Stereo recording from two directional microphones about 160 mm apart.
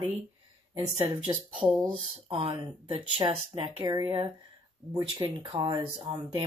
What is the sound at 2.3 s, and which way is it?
Speech, 30° right (ahead or behind).